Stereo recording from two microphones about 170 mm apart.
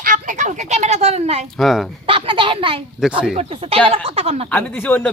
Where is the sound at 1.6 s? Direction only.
Centre (ahead or behind).